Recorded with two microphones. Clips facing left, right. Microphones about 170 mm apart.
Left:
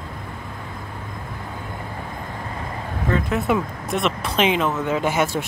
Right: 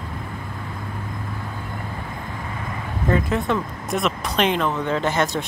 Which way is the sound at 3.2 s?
5° left (ahead or behind).